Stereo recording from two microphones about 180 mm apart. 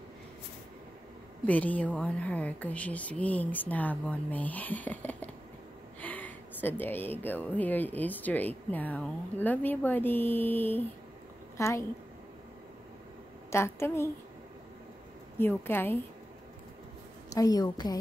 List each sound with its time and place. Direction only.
1.4 s a woman's voice: 10° left (ahead or behind)
13.5 s a woman's voice: 15° left (ahead or behind)
15.3 s a woman's voice: 10° left (ahead or behind)
17.3 s a woman's voice: 20° left (ahead or behind)